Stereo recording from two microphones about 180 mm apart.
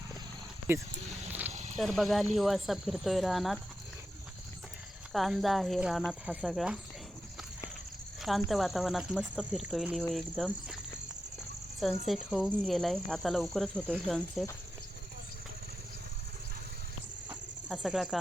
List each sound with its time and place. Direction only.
1.3 s a sound: 10° right (ahead or behind)
1.5 s a sound: 40° right (ahead or behind)
1.8 s speech: centre (ahead or behind)
5.1 s speech: centre (ahead or behind)
8.4 s speech: centre (ahead or behind)
12.0 s speech: centre (ahead or behind)
17.7 s speech: centre (ahead or behind)